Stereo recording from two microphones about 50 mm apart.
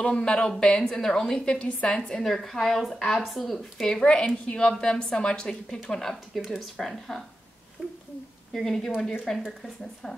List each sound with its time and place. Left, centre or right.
0.0 s a woman's voice: centre
2.2 s speech: centre
3.8 s a woman's voice: centre
8.5 s a woman's voice: centre